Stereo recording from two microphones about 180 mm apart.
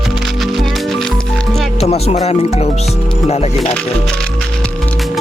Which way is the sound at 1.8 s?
35° left (ahead or behind).